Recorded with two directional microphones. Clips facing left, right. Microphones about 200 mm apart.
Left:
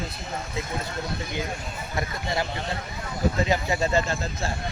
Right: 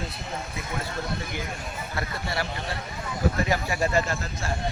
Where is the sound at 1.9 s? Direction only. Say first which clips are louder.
Left 3 dB; 20° left (ahead or behind).